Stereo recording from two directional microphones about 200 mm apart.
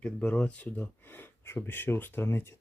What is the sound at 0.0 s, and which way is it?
Speech, 5° left (ahead or behind).